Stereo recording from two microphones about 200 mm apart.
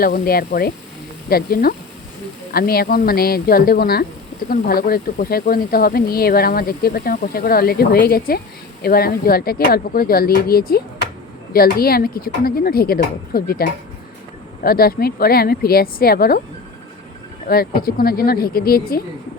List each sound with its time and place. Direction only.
0.0 s speech: 50° left (ahead or behind)
17.5 s speech: 50° left (ahead or behind)